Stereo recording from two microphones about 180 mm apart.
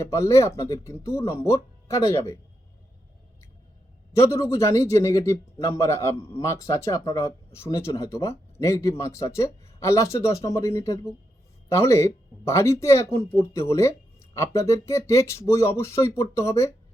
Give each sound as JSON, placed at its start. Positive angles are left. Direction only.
{"t": 0.0, "sound": "speech", "side_deg": 15}
{"t": 4.1, "sound": "speech", "side_deg": 15}